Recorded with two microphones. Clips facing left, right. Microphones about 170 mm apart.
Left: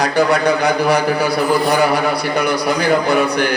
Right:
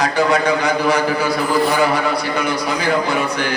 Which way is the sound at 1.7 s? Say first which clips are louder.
Left 2 dB; 65° left (ahead or behind).